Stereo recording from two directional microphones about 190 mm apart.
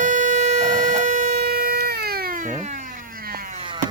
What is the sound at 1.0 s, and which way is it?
Cat, 45° right (ahead or behind).